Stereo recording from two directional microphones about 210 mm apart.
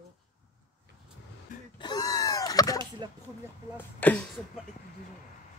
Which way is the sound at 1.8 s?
20° left (ahead or behind).